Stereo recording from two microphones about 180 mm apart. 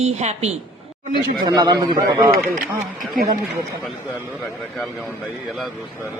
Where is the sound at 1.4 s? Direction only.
25° right (ahead or behind).